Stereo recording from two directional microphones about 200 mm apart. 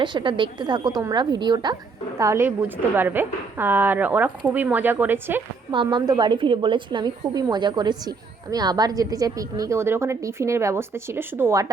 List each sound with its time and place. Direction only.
0.0 s a woman's voice: 25° right (ahead or behind)
5.7 s a woman's voice: 25° right (ahead or behind)